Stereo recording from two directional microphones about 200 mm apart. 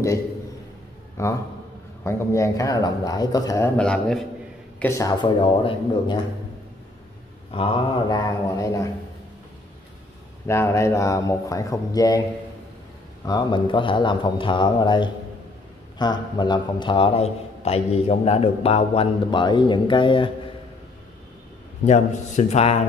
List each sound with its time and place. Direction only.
1.2 s a man's voice: 15° left (ahead or behind)
7.5 s a man's voice: 25° left (ahead or behind)
10.4 s speech: 10° left (ahead or behind)
13.2 s a man's voice: 20° left (ahead or behind)
21.8 s a man's voice: 35° left (ahead or behind)